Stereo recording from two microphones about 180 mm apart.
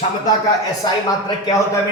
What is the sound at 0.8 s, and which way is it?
Speech, 20° left (ahead or behind).